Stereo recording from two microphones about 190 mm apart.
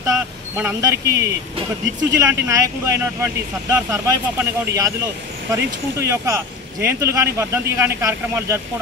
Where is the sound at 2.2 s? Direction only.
15° right (ahead or behind).